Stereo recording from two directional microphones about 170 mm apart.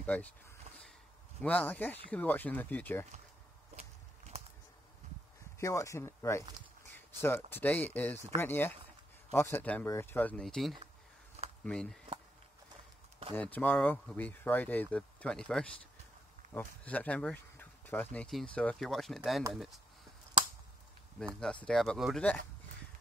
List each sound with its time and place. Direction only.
0.0 s a sound: 10° left (ahead or behind)
1.4 s speech: 10° left (ahead or behind)
5.6 s speech: 20° left (ahead or behind)
13.3 s speech: 10° left (ahead or behind)
21.6 s speech: 5° left (ahead or behind)